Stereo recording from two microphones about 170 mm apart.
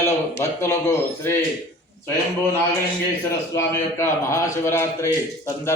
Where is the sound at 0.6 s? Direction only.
15° left (ahead or behind).